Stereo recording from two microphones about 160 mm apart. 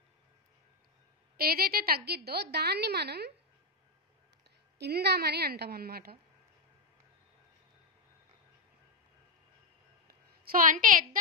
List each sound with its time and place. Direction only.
1.3 s a woman's voice: 70° right (ahead or behind); by 3.3 s 90° right
4.7 s a woman's voice: 90° right; by 6.1 s 75° right (ahead or behind)
10.0 s a sound: 65° right (ahead or behind)